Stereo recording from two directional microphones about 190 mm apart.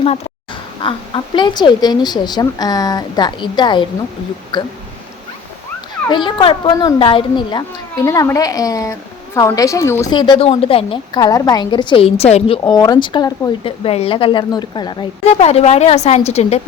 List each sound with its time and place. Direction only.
0.8 s a woman's voice: 25° left (ahead or behind)
6.1 s a woman's voice: 25° left (ahead or behind)